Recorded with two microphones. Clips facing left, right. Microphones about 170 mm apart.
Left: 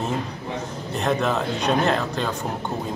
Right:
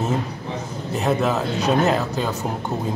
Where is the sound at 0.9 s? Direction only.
5° right (ahead or behind).